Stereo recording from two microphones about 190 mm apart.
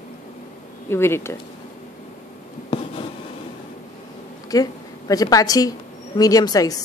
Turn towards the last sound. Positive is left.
turn(degrees=20)  # may be behind; listen again after turning